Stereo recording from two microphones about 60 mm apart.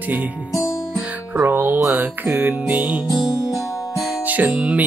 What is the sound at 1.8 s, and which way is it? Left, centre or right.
Music, centre.